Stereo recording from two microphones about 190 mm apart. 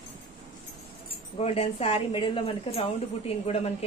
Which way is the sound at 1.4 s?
35° left (ahead or behind).